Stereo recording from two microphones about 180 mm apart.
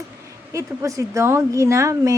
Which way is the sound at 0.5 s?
15° right (ahead or behind).